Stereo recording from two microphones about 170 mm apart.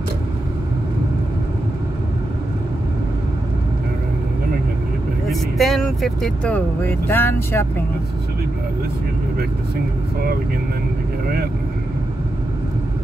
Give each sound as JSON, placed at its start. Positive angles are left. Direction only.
{"t": 5.3, "sound": "speech", "side_deg": 0}